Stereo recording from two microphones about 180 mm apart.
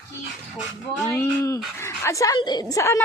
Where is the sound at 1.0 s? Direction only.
15° left (ahead or behind).